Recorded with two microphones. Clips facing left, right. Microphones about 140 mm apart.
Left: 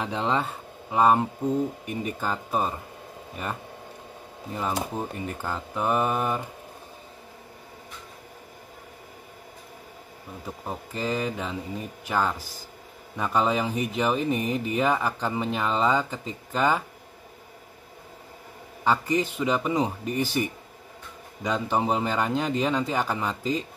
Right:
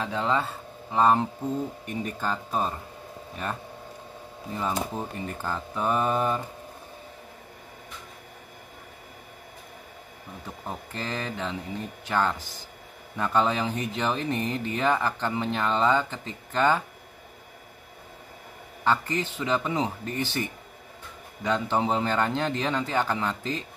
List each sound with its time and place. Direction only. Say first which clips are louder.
0.0 s speech: even; 20° left (ahead or behind)
4.6 s speech: left 1 dB; 15° left (ahead or behind)
10.9 s speech: left 6 dB; 10° left (ahead or behind)
18.9 s speech: left 2 dB; 10° left (ahead or behind)